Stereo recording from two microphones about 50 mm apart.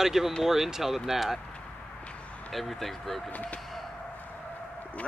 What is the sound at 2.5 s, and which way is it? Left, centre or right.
Speech, centre.